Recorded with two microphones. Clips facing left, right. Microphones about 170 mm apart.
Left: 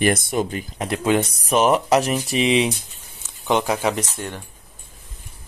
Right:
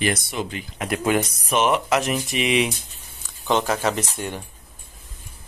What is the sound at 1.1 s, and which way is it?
Speech, 25° left (ahead or behind).